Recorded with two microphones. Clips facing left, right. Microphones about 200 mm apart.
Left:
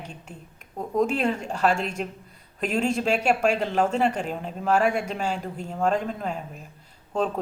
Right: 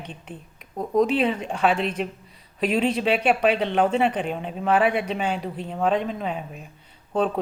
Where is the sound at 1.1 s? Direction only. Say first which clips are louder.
Right 2 dB; centre (ahead or behind).